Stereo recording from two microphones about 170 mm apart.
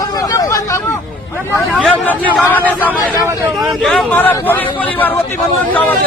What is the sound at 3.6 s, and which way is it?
A man's voice, centre (ahead or behind).